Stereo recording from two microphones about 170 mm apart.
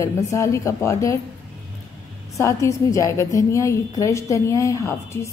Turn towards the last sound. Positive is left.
turn(degrees=15)  # may be behind; listen again after turning